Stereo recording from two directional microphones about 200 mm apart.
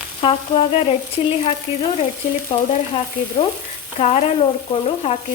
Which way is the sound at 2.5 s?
25° left (ahead or behind).